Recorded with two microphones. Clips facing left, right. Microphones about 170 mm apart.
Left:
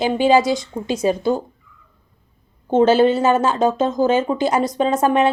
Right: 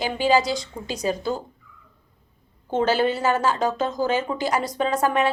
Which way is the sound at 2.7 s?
25° left (ahead or behind).